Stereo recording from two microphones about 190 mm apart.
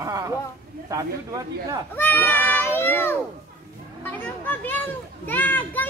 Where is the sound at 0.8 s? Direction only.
20° right (ahead or behind).